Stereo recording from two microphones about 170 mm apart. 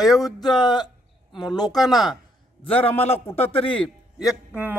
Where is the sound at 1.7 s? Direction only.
Centre (ahead or behind).